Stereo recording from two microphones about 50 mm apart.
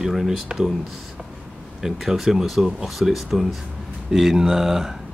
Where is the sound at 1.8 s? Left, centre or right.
Centre.